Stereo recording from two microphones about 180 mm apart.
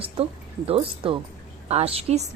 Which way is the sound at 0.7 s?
30° right (ahead or behind).